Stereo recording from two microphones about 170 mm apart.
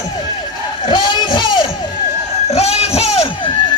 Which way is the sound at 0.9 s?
25° left (ahead or behind).